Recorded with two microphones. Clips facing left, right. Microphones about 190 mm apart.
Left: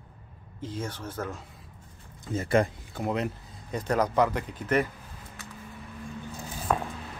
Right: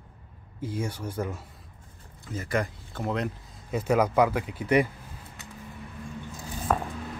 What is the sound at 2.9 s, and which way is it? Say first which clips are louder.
Speech: right 2 dB; 5° left (ahead or behind).